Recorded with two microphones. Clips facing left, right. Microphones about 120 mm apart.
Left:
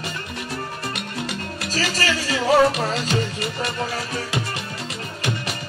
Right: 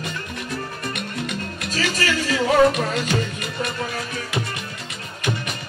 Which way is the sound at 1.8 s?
35° left (ahead or behind).